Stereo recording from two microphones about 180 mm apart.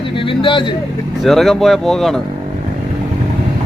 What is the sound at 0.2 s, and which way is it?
Speech, 30° left (ahead or behind).